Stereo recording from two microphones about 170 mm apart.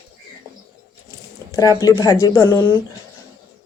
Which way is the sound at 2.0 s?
20° left (ahead or behind).